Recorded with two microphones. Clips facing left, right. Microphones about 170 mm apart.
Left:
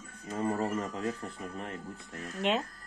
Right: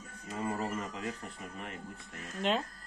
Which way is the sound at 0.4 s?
35° left (ahead or behind).